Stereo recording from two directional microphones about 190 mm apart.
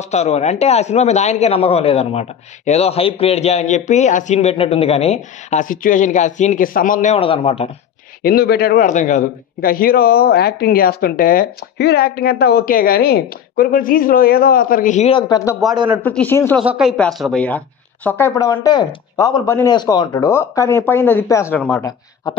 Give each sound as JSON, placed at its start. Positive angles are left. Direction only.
{"t": 0.1, "sound": "a man's voice", "side_deg": 35}
{"t": 8.2, "sound": "a man's voice", "side_deg": 55}
{"t": 15.7, "sound": "speech", "side_deg": -20}
{"t": 16.0, "sound": "speech", "side_deg": 10}
{"t": 16.6, "sound": "speech", "side_deg": -5}